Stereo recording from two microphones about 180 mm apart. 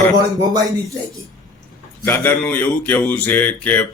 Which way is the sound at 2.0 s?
10° left (ahead or behind).